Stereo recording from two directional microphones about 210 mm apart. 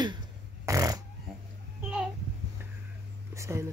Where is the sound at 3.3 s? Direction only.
15° right (ahead or behind).